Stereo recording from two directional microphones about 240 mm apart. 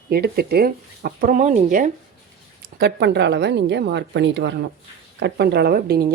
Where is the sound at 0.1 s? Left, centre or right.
Right.